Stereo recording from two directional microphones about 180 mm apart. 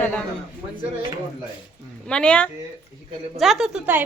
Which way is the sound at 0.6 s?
20° right (ahead or behind).